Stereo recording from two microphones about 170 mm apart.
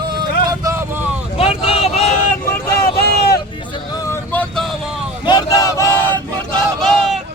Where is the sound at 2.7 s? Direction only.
65° left (ahead or behind).